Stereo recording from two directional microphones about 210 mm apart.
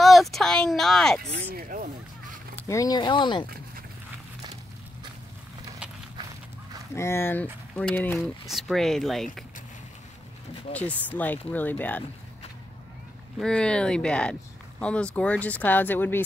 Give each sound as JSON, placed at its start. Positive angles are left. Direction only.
{"t": 0.0, "sound": "speech", "side_deg": 0}
{"t": 1.5, "sound": "a sound", "side_deg": -45}
{"t": 2.5, "sound": "speech", "side_deg": 15}
{"t": 7.0, "sound": "speech", "side_deg": 10}
{"t": 8.5, "sound": "speech", "side_deg": 0}
{"t": 10.7, "sound": "speech", "side_deg": 5}
{"t": 13.4, "sound": "speech", "side_deg": 5}